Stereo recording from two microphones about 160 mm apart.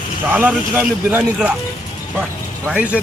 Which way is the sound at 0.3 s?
10° right (ahead or behind).